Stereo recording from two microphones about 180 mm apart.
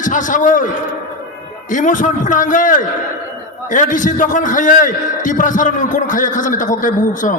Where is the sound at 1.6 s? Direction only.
45° left (ahead or behind).